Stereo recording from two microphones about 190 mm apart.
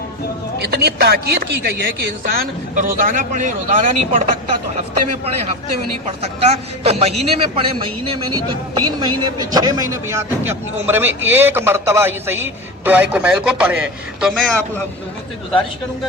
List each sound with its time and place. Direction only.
0.6 s a man's voice: 55° right (ahead or behind); by 4.2 s 40° right (ahead or behind)
6.1 s a man's voice: 35° right (ahead or behind); by 14.5 s centre (ahead or behind)